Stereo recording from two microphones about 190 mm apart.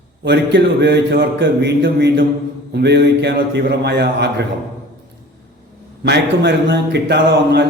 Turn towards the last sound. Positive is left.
turn(degrees=-60)  # may be behind; listen again after turning